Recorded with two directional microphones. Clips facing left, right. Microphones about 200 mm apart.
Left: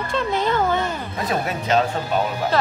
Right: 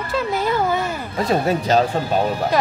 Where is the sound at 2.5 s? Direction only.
15° right (ahead or behind).